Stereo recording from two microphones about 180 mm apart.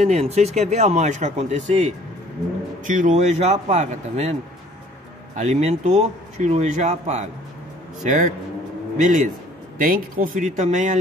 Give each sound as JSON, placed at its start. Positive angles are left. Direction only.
{"t": 0.0, "sound": "speech", "side_deg": -35}